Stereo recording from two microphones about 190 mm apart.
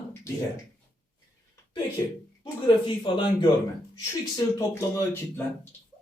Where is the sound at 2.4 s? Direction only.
25° left (ahead or behind).